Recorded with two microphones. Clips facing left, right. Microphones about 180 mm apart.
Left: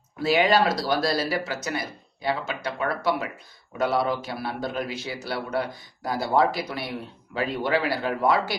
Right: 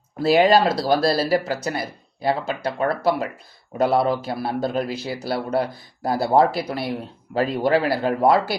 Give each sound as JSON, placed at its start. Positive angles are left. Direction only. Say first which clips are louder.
{"t": 0.2, "sound": "a man's voice", "louder": "right 5 dB", "side_deg": -35}